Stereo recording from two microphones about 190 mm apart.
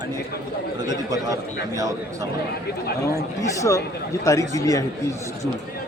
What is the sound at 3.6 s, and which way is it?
Speech, 15° left (ahead or behind).